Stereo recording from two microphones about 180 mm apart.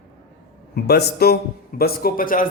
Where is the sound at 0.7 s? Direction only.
60° left (ahead or behind).